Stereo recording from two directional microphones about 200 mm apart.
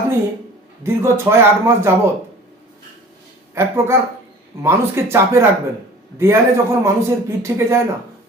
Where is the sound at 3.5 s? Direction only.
10° right (ahead or behind).